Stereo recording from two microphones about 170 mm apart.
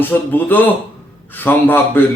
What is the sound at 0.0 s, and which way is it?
A man's voice, 10° left (ahead or behind).